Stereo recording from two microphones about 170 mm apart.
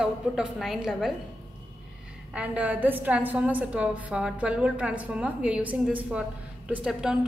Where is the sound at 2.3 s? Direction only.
10° right (ahead or behind).